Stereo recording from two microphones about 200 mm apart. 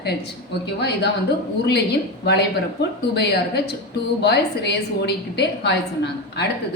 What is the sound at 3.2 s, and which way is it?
A woman's voice, 55° left (ahead or behind).